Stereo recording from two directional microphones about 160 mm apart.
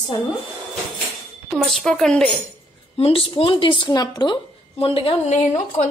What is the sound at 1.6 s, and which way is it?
Speech, 5° left (ahead or behind).